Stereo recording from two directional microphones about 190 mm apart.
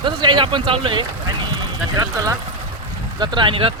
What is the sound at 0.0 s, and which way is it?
Speech, 25° right (ahead or behind).